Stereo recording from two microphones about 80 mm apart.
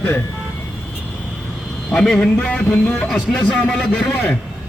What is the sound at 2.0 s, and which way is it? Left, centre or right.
A man's voice, centre.